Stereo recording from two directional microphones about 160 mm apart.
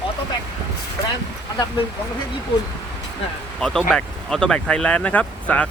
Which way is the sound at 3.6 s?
5° left (ahead or behind).